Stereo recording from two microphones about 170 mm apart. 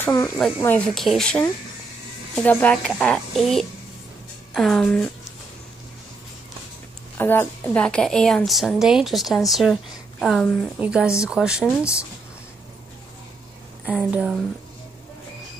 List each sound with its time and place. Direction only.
0.0 s a woman's voice: 20° left (ahead or behind)
7.2 s a woman's voice: 15° left (ahead or behind)
10.8 s a woman's voice: 5° right (ahead or behind)
13.8 s a woman's voice: 5° right (ahead or behind)